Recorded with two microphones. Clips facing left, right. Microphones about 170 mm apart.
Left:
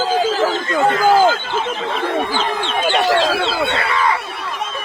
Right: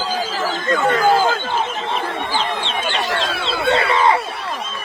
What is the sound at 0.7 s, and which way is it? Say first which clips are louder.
Speech: left 2 dB; 30° left (ahead or behind).